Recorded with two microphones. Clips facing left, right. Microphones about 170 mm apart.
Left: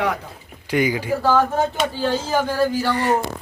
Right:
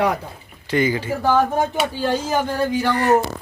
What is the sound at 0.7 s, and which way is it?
Speech, 10° left (ahead or behind).